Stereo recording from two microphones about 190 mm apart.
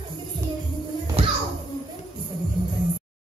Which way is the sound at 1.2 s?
30° right (ahead or behind).